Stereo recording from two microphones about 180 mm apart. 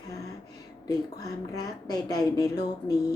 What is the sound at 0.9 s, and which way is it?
A woman's voice, 20° left (ahead or behind).